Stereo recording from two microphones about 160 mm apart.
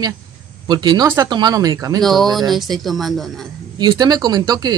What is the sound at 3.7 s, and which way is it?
Speech, 25° right (ahead or behind).